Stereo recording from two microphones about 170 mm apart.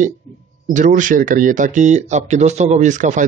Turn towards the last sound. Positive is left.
turn(degrees=-45)  # may be behind; listen again after turning